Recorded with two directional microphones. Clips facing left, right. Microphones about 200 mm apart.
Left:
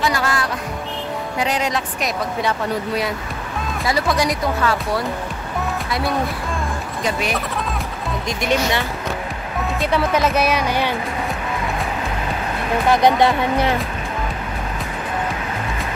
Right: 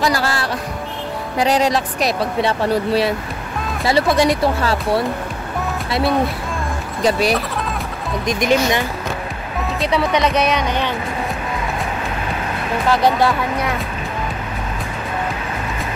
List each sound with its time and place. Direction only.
0.0 s music: 35° right (ahead or behind)
1.4 s speech: 35° right (ahead or behind)
8.3 s speech: 15° right (ahead or behind)
9.8 s speech: centre (ahead or behind)
12.9 s speech: 20° left (ahead or behind)